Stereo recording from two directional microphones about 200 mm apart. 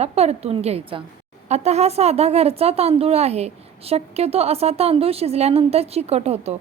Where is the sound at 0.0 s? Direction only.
30° right (ahead or behind).